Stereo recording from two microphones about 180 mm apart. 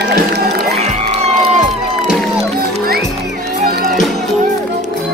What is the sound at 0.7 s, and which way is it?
Music, 35° right (ahead or behind).